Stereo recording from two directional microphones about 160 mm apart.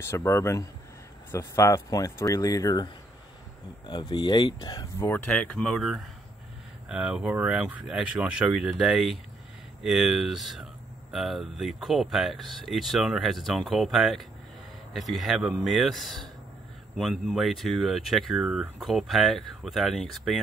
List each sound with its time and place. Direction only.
0.0 s speech: 15° left (ahead or behind)
4.9 s speech: 15° left (ahead or behind)